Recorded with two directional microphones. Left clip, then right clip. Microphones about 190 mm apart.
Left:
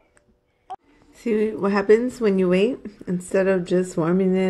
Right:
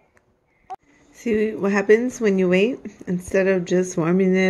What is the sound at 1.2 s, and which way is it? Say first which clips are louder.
Speech: even; centre (ahead or behind).